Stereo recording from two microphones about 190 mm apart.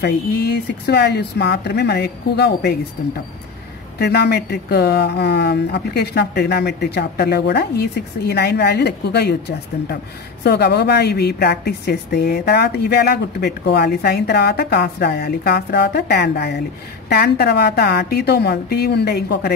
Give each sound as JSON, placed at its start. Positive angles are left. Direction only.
{"t": 0.0, "sound": "speech", "side_deg": 55}
{"t": 4.0, "sound": "speech", "side_deg": 60}
{"t": 10.4, "sound": "speech", "side_deg": 60}